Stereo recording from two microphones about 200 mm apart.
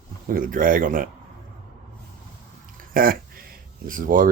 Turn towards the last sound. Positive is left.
turn(degrees=-45)  # may be behind; listen again after turning